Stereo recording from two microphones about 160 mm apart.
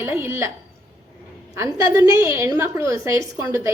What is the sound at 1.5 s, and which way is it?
A woman's voice, 20° right (ahead or behind).